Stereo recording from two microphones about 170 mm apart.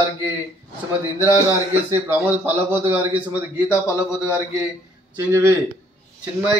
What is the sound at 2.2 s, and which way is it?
A man's voice, 15° right (ahead or behind).